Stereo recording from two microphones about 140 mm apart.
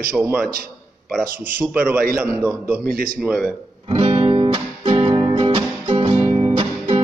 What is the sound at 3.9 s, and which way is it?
Music, 45° right (ahead or behind).